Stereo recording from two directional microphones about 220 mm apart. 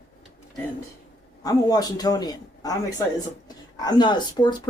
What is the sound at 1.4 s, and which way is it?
Speech, 15° left (ahead or behind).